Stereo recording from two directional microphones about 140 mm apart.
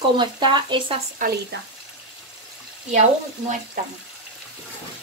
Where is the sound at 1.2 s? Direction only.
70° right (ahead or behind).